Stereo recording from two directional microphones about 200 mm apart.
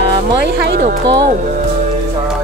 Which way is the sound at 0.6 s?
55° right (ahead or behind).